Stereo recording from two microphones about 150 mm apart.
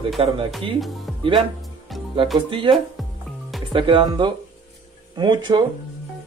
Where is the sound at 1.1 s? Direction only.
Centre (ahead or behind).